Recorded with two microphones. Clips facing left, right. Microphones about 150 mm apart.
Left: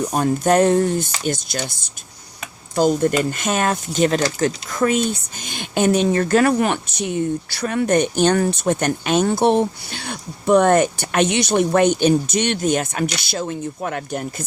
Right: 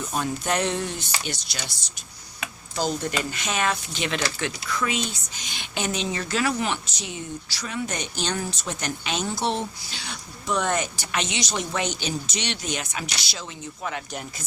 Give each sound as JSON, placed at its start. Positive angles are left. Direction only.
{"t": 0.0, "sound": "speech", "side_deg": 45}